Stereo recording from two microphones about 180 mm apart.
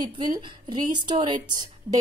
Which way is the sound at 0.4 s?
25° right (ahead or behind).